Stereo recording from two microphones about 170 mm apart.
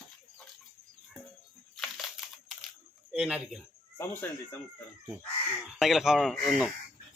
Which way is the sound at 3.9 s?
15° left (ahead or behind).